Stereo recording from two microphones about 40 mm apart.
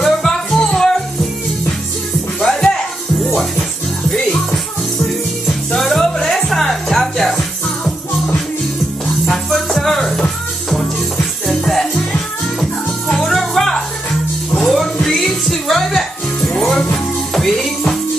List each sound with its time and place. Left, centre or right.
0.0 s music: centre
2.4 s music: centre
5.8 s music: centre
9.2 s music: centre
11.4 s music: centre
13.1 s music: centre
16.4 s music: centre